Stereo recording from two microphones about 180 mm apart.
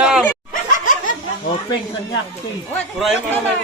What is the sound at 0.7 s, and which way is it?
Snicker, 45° left (ahead or behind).